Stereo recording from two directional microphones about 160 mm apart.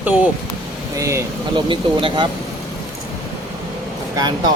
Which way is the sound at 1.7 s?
30° right (ahead or behind).